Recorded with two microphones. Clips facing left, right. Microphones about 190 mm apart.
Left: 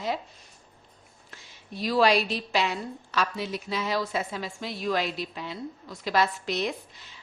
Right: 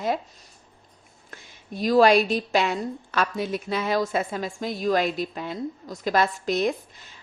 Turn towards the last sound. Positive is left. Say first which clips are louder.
# right 6 dB
turn(degrees=-45)  # may be behind; listen again after turning